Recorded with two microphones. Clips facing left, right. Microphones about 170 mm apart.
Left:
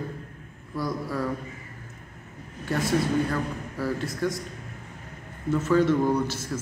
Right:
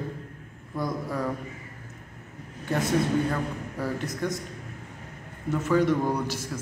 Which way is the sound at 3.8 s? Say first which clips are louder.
Left 2 dB; 20° right (ahead or behind).